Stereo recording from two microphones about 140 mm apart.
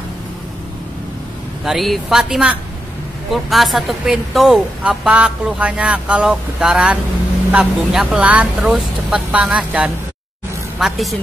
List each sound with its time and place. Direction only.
1.6 s speech: centre (ahead or behind)